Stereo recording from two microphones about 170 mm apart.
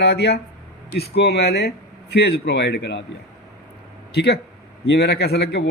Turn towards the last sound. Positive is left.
turn(degrees=80)